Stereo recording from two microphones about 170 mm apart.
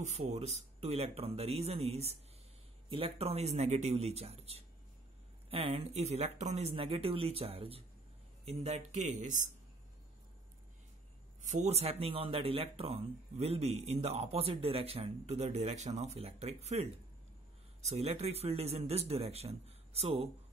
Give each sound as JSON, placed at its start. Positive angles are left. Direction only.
{"t": 0.0, "sound": "speech", "side_deg": -40}
{"t": 11.6, "sound": "speech", "side_deg": -40}